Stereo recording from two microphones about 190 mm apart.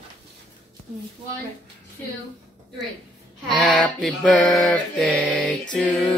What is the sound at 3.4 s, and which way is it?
Mantra, 5° left (ahead or behind).